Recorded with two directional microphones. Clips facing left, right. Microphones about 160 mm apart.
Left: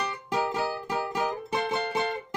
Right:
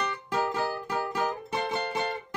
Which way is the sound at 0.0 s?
10° left (ahead or behind).